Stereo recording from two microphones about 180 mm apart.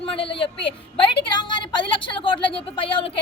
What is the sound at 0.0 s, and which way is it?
Speech, 30° left (ahead or behind).